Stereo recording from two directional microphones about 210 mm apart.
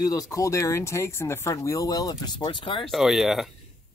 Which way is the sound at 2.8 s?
Centre (ahead or behind).